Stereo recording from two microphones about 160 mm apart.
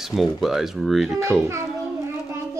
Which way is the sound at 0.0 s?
Centre (ahead or behind).